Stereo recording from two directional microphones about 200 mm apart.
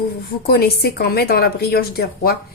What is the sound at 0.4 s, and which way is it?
A woman's voice, 50° left (ahead or behind).